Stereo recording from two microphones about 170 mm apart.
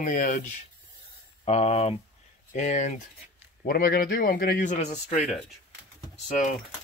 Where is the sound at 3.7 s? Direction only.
60° left (ahead or behind); by 5.2 s 40° left (ahead or behind).